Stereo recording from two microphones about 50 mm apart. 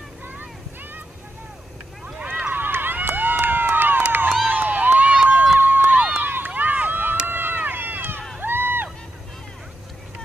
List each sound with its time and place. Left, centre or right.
2.0 s boat: centre
2.4 s run: right
4.5 s a sound: right
5.3 s run: centre
5.6 s crowd: right
6.2 s run: right
8.4 s a sound: right